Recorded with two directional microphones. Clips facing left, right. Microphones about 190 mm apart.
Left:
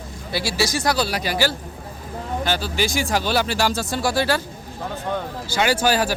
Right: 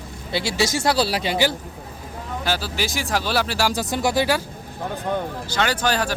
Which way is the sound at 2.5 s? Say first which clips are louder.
Left 1 dB; 5° right (ahead or behind).